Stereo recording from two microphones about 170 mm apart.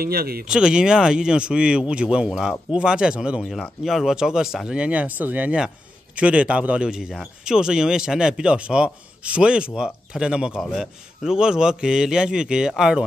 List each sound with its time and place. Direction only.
0.0 s speech: 65° right (ahead or behind)
0.5 s speech: 5° right (ahead or behind)